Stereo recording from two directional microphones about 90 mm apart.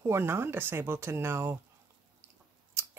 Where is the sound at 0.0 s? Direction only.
25° right (ahead or behind).